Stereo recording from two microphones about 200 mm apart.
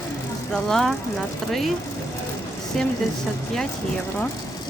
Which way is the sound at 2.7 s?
Centre (ahead or behind).